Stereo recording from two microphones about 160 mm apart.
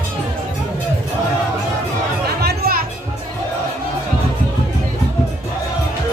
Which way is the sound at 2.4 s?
75° right (ahead or behind).